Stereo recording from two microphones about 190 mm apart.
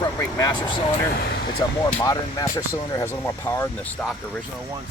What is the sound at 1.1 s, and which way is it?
Speech, 55° left (ahead or behind).